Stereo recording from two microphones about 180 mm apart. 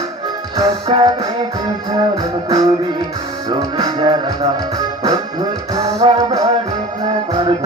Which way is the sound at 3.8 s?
25° right (ahead or behind).